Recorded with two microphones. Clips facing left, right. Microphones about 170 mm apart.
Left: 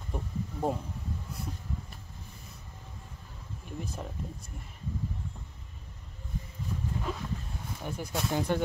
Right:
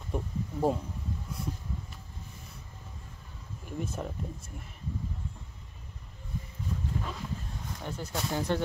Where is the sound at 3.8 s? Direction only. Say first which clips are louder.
Right 5 dB; centre (ahead or behind).